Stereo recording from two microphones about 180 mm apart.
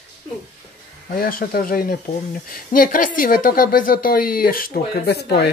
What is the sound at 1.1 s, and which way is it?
Speech, 55° left (ahead or behind).